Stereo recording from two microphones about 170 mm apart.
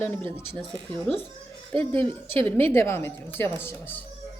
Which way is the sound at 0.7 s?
25° right (ahead or behind).